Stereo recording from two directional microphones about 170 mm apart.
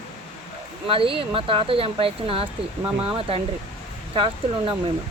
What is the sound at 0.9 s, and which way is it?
Speech, 30° right (ahead or behind).